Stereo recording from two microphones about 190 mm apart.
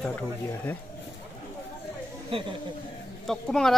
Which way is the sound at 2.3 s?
25° right (ahead or behind).